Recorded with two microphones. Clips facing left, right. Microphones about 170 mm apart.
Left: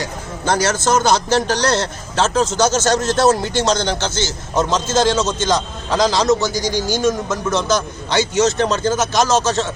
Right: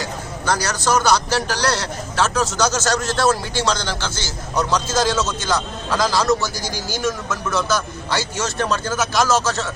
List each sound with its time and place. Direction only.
0.4 s a man's voice: 25° left (ahead or behind)